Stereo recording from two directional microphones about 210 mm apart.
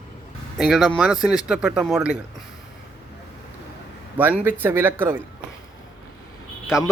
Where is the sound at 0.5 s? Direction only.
Centre (ahead or behind).